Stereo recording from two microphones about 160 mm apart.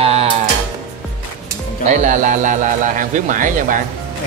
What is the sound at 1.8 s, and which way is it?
Speech, 50° right (ahead or behind).